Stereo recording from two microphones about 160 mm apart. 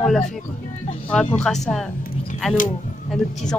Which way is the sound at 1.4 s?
5° left (ahead or behind).